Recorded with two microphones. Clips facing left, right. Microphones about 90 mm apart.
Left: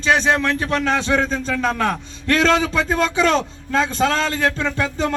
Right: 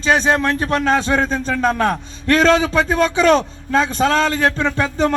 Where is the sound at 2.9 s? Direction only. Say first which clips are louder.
Right 4 dB; 50° right (ahead or behind).